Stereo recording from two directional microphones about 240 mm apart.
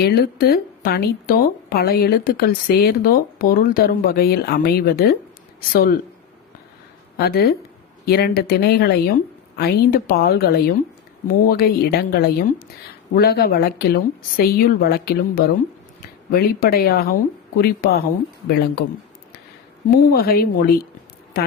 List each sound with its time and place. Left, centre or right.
0.0 s speech: left
7.2 s speech: left
19.9 s speech: left